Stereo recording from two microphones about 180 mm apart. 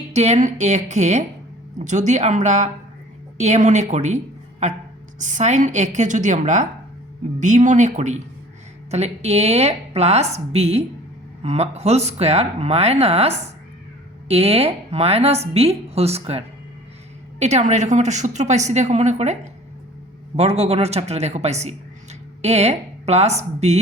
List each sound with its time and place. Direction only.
0.1 s a woman's voice: 40° right (ahead or behind)
5.2 s a woman's voice: 40° right (ahead or behind)
17.4 s a woman's voice: 40° right (ahead or behind)